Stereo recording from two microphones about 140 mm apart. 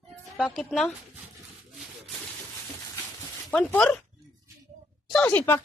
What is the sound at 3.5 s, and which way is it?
Speech, 10° left (ahead or behind).